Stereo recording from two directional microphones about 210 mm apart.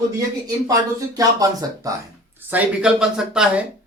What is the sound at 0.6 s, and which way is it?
Speech, 15° right (ahead or behind).